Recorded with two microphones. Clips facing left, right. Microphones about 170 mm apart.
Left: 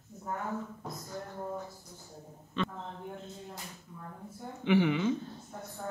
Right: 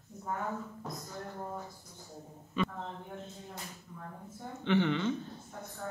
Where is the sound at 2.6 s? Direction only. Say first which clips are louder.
Right 1 dB; 10° right (ahead or behind).